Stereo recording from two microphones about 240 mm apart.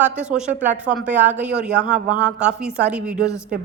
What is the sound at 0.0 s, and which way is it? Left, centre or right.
Speech, centre.